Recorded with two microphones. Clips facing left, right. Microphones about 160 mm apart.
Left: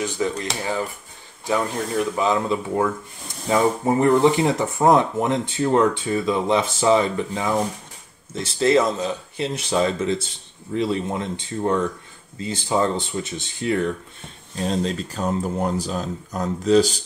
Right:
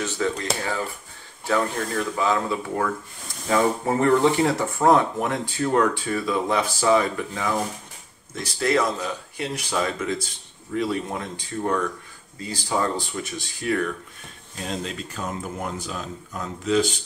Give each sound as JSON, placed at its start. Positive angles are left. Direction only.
{"t": 0.0, "sound": "speech", "side_deg": 15}
{"t": 14.6, "sound": "speech", "side_deg": 35}